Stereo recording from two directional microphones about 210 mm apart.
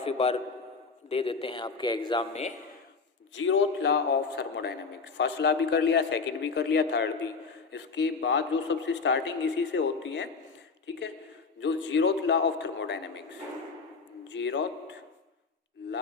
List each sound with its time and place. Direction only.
0.0 s speech: 30° left (ahead or behind)
3.3 s a man's voice: 65° left (ahead or behind)
11.6 s a man's voice: 60° left (ahead or behind)
14.3 s a man's voice: 60° left (ahead or behind)